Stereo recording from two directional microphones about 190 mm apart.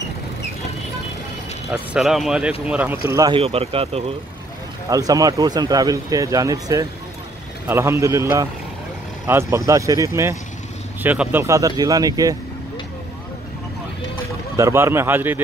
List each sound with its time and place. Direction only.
1.7 s speech: centre (ahead or behind)
3.1 s speech: 20° right (ahead or behind)
3.3 s speech: 30° right (ahead or behind)
4.8 s speech: 20° right (ahead or behind)
14.6 s speech: 15° right (ahead or behind)